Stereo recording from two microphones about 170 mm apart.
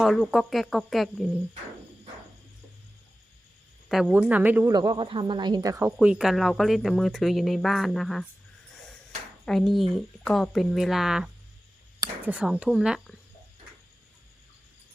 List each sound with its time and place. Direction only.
0.0 s speech: centre (ahead or behind)
3.8 s speech: centre (ahead or behind)
4.7 s speech: 25° right (ahead or behind)
6.0 s speech: 5° right (ahead or behind)
9.5 s speech: centre (ahead or behind)